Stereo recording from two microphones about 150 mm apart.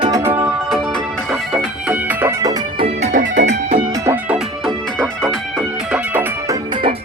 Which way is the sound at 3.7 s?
20° right (ahead or behind).